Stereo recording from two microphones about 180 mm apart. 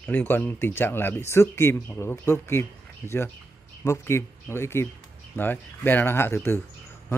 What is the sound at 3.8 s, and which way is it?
Speech, 15° left (ahead or behind).